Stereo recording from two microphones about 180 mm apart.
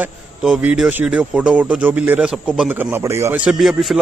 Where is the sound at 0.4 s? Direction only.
5° right (ahead or behind).